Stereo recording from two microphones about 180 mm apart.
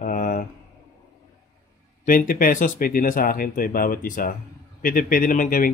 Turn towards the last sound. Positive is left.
turn(degrees=50)  # may be behind; listen again after turning